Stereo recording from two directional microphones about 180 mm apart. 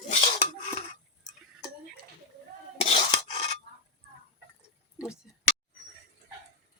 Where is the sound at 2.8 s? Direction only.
35° left (ahead or behind).